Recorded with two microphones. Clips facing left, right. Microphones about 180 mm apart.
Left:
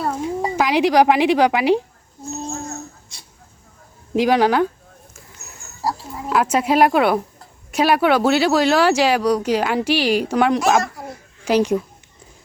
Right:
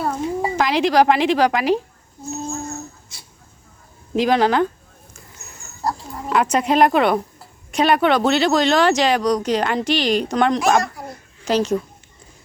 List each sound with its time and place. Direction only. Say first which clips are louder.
0.0 s a sound: even; 10° left (ahead or behind)
0.5 s speech: left 1 dB; 10° left (ahead or behind)
4.1 s speech: left 1 dB; 10° left (ahead or behind)
5.8 s speech: even; 5° left (ahead or behind)